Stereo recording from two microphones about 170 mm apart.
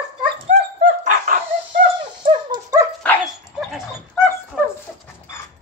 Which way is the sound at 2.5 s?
20° right (ahead or behind).